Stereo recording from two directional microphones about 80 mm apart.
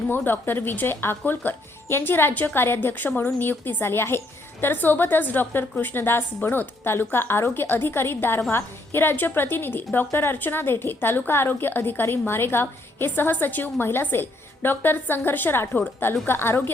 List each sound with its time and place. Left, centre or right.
0.1 s a woman's voice: left